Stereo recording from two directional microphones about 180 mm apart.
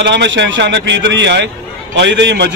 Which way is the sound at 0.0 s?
80° right.